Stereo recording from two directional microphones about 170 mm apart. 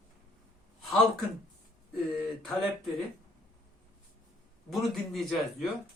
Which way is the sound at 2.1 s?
Centre (ahead or behind).